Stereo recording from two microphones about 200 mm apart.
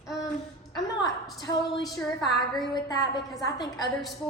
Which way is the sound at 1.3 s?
20° left (ahead or behind).